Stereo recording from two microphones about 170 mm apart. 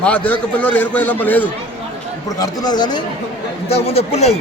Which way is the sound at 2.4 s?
25° left (ahead or behind).